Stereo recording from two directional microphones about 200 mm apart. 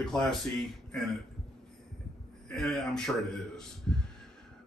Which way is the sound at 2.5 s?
5° left (ahead or behind).